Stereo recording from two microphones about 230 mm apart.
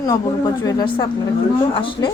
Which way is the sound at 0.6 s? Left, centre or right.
Centre.